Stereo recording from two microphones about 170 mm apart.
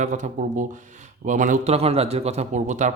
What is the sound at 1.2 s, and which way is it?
A man's voice, 45° right (ahead or behind).